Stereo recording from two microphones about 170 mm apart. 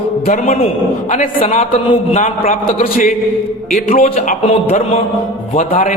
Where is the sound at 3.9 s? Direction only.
50° left (ahead or behind).